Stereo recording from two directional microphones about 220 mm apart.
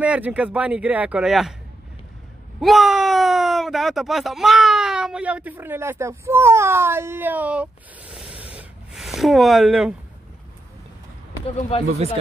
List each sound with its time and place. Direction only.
0.0 s speech: 5° right (ahead or behind)
2.6 s speech: centre (ahead or behind)
11.7 s speech: 25° left (ahead or behind)